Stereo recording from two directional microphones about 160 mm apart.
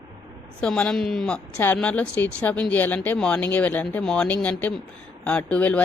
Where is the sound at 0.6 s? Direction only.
5° left (ahead or behind).